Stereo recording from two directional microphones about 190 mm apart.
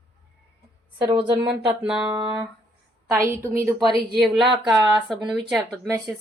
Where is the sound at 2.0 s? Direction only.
25° right (ahead or behind).